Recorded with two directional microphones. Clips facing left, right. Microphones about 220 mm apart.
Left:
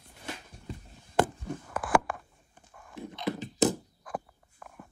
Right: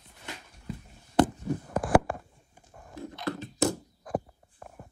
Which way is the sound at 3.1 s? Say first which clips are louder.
Left 1 dB; 20° left (ahead or behind).